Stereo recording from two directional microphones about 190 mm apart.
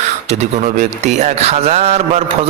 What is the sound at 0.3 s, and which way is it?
A man's voice, 35° right (ahead or behind).